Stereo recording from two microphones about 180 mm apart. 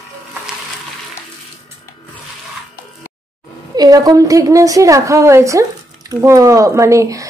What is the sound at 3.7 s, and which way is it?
A woman's voice, 20° right (ahead or behind).